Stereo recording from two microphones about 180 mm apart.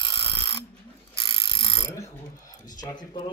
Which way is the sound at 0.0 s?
25° left (ahead or behind).